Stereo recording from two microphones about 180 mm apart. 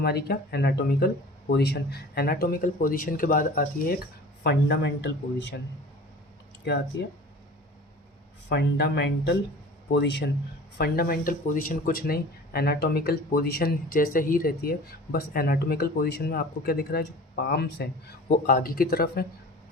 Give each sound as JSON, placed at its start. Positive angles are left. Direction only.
{"t": 0.0, "sound": "speech", "side_deg": 65}
{"t": 8.4, "sound": "speech", "side_deg": 70}
{"t": 10.8, "sound": "speech", "side_deg": 55}